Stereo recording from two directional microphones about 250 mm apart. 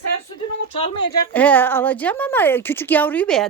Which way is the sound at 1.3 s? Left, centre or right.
Centre.